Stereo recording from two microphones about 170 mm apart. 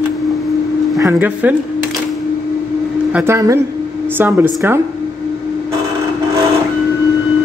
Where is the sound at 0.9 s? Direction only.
20° right (ahead or behind).